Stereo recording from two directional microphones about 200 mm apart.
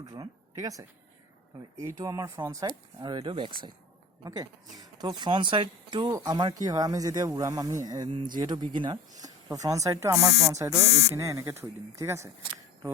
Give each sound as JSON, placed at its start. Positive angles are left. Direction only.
{"t": 0.0, "sound": "speech", "side_deg": -15}